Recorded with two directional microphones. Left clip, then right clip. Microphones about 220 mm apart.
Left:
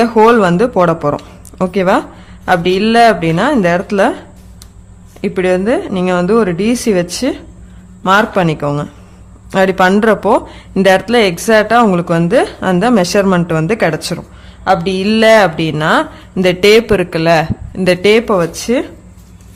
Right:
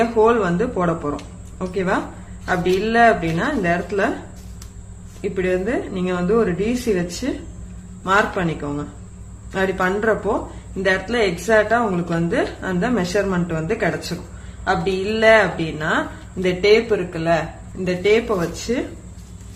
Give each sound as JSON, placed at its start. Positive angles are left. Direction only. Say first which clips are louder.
{"t": 0.0, "sound": "a woman's voice", "louder": "left 8 dB", "side_deg": 55}
{"t": 5.2, "sound": "a woman's voice", "louder": "left 8 dB", "side_deg": 55}